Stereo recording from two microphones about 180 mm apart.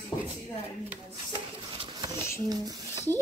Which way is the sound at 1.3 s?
25° right (ahead or behind).